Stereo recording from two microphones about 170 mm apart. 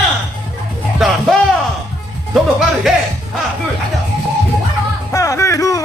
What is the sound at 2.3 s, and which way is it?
Music, centre (ahead or behind).